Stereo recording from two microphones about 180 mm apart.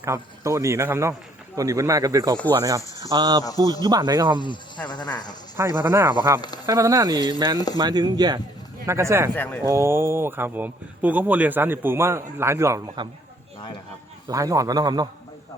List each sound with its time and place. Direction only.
0.0 s speech: 15° right (ahead or behind)
4.9 s speech: 25° left (ahead or behind)
5.5 s speech: 15° right (ahead or behind)
9.3 s speech: 10° left (ahead or behind)
9.6 s speech: 15° right (ahead or behind)
14.3 s speech: 20° right (ahead or behind)